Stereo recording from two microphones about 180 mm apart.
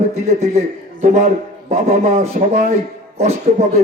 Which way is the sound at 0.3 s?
40° right (ahead or behind).